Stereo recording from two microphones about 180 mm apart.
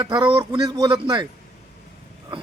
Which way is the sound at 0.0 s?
25° right (ahead or behind).